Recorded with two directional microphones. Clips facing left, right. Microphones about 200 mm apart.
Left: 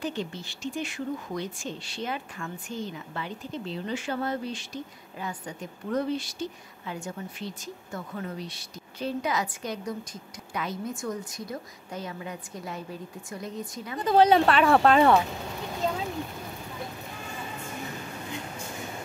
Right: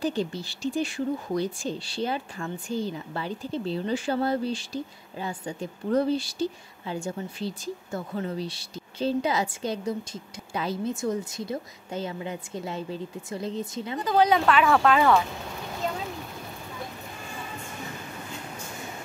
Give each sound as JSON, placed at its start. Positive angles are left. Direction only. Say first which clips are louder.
{"t": 0.0, "sound": "a woman's voice", "louder": "right 5 dB", "side_deg": -35}
{"t": 14.0, "sound": "speech", "louder": "left 2 dB", "side_deg": 30}